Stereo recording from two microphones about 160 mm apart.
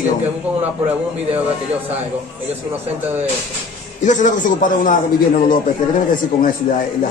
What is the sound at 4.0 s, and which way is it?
A man's voice, 50° left (ahead or behind).